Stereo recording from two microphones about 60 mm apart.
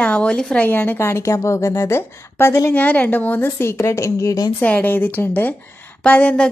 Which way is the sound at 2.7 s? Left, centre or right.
Left.